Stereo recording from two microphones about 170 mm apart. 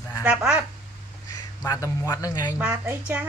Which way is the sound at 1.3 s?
20° left (ahead or behind).